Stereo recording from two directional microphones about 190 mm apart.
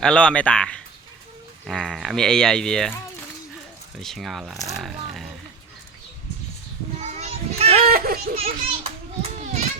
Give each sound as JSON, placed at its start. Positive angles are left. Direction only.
{"t": 0.0, "sound": "speech", "side_deg": 5}
{"t": 4.0, "sound": "speech", "side_deg": 0}
{"t": 7.0, "sound": "children playing", "side_deg": -35}
{"t": 7.9, "sound": "speech", "side_deg": -50}
{"t": 8.4, "sound": "a child's voice", "side_deg": -30}